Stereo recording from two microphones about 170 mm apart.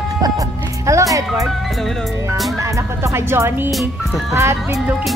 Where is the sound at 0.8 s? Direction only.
20° right (ahead or behind).